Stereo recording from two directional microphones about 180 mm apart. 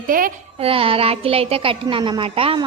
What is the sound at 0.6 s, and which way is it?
Speech, 30° right (ahead or behind).